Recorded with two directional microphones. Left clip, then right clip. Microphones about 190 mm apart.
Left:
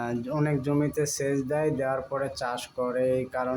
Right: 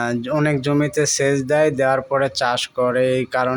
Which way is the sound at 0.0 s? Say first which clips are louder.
Right 9 dB; 40° right (ahead or behind).